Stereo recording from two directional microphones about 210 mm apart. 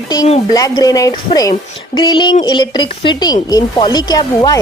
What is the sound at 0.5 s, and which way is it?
Speech, 15° left (ahead or behind).